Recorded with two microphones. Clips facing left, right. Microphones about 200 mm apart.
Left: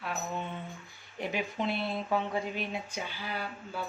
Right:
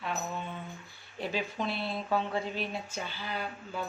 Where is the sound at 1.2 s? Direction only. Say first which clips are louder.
Left 1 dB; 20° left (ahead or behind).